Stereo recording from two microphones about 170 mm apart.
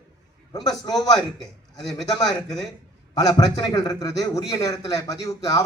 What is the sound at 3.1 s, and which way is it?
A man's voice, 20° left (ahead or behind).